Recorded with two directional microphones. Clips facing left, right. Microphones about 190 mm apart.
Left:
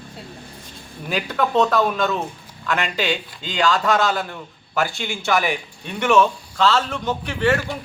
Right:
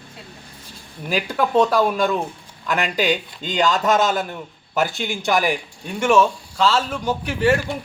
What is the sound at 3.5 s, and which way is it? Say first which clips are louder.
A man's voice: right 1 dB; 20° right (ahead or behind).